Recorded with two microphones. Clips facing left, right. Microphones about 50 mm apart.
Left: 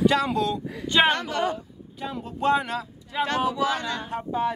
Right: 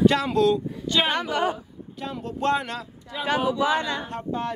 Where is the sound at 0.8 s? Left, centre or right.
Left.